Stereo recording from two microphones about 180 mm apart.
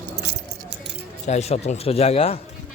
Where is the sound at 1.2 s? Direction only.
35° left (ahead or behind).